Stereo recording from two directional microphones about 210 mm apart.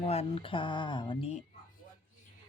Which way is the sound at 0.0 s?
30° left (ahead or behind).